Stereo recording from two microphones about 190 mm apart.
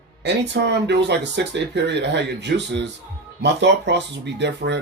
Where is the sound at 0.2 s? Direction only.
65° right (ahead or behind).